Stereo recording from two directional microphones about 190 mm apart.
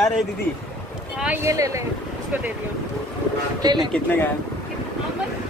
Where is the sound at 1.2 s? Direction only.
10° right (ahead or behind).